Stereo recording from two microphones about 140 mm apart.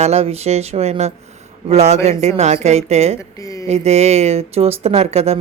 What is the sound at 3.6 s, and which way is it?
Speech, 50° right (ahead or behind).